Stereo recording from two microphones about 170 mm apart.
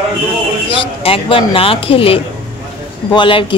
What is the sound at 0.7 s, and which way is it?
Speech, 30° left (ahead or behind).